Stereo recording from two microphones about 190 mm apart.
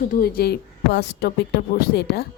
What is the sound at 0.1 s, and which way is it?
Speech, 55° left (ahead or behind).